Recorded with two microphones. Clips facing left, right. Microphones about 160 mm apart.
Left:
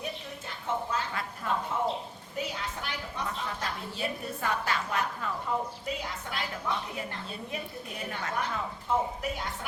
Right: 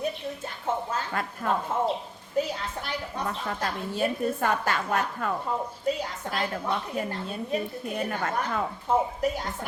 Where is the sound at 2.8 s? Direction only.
45° right (ahead or behind).